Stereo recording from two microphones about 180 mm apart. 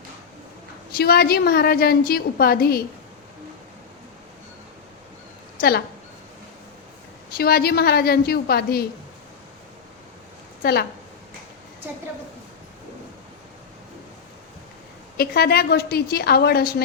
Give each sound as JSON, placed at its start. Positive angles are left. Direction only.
{"t": 0.9, "sound": "a woman's voice", "side_deg": 60}
{"t": 5.5, "sound": "a woman's voice", "side_deg": 55}
{"t": 7.3, "sound": "a woman's voice", "side_deg": 60}
{"t": 10.6, "sound": "a woman's voice", "side_deg": 60}
{"t": 15.2, "sound": "a woman's voice", "side_deg": 60}